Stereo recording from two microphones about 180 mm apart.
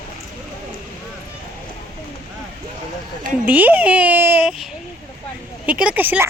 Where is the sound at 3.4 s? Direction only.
10° right (ahead or behind).